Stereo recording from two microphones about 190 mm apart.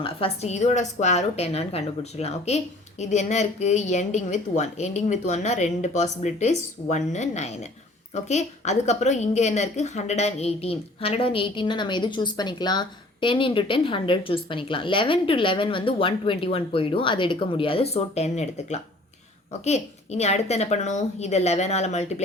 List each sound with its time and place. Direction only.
0.0 s a woman's voice: 30° left (ahead or behind)